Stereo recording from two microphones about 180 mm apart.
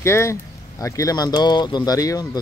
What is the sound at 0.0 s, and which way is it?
Speech, 15° left (ahead or behind).